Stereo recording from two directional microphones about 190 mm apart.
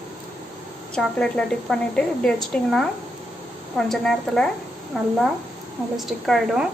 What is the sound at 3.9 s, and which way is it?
Speech, centre (ahead or behind).